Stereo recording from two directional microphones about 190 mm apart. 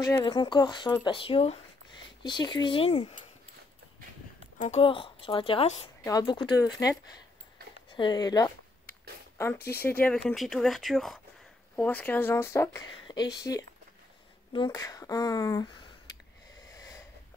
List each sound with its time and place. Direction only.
0.0 s speech: 20° left (ahead or behind)
4.6 s speech: 35° left (ahead or behind)
9.6 s speech: 55° left (ahead or behind)
10.0 s speech: centre (ahead or behind); by 15.9 s 25° left (ahead or behind)
16.7 s wheeze: 15° left (ahead or behind)